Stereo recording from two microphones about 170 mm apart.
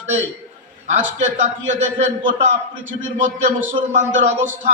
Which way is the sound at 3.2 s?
45° right (ahead or behind).